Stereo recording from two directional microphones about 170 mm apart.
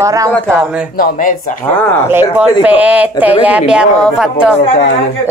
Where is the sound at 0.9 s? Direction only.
55° left (ahead or behind).